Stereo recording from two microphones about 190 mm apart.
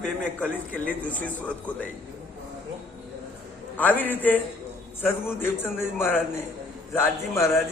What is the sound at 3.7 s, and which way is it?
Speech, 10° left (ahead or behind).